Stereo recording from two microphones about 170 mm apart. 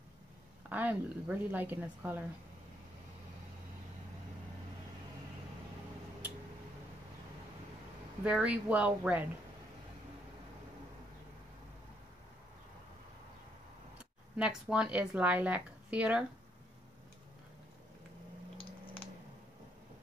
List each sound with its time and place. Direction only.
0.7 s a woman's voice: 10° right (ahead or behind)
8.2 s a woman's voice: 5° right (ahead or behind)
13.9 s speech: 5° right (ahead or behind)